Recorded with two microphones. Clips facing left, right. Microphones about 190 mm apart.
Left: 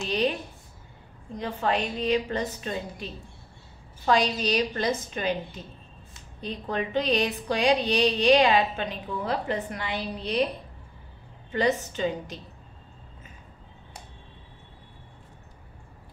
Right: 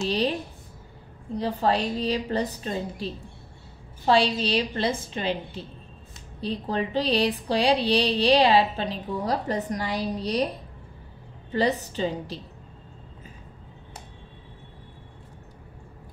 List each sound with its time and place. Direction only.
0.0 s a woman's voice: 35° right (ahead or behind)
11.5 s speech: 35° right (ahead or behind)